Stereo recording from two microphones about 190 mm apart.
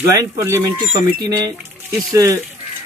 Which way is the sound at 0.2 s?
15° right (ahead or behind).